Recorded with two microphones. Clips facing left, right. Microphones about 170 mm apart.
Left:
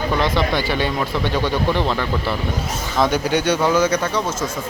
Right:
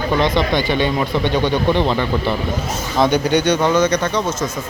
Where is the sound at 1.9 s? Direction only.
20° right (ahead or behind).